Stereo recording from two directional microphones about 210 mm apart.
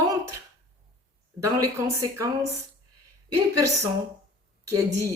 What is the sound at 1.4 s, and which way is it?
Speech, 15° right (ahead or behind).